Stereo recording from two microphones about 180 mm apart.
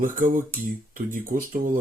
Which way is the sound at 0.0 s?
50° right (ahead or behind).